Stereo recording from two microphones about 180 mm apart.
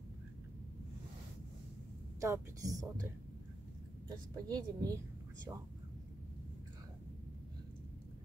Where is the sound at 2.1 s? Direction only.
15° right (ahead or behind).